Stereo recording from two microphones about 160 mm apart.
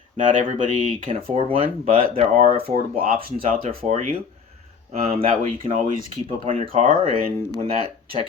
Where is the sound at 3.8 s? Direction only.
55° right (ahead or behind).